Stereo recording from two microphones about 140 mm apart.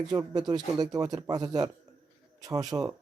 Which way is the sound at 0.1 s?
30° right (ahead or behind).